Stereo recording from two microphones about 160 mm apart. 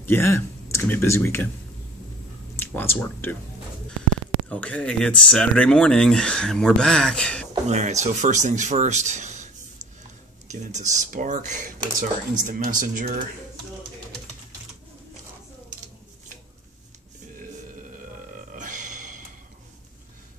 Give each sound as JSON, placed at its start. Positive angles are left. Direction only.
{"t": 0.0, "sound": "speech", "side_deg": 15}
{"t": 2.5, "sound": "speech", "side_deg": 10}
{"t": 4.5, "sound": "speech", "side_deg": 10}
{"t": 7.6, "sound": "speech", "side_deg": -45}
{"t": 12.0, "sound": "speech", "side_deg": -60}
{"t": 18.6, "sound": "a sound", "side_deg": -50}